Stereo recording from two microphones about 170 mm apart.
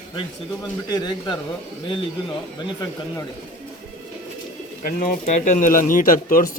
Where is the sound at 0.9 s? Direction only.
25° left (ahead or behind).